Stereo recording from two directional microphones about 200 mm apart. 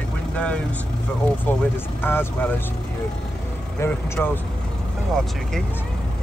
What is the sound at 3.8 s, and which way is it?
Speech, 10° left (ahead or behind).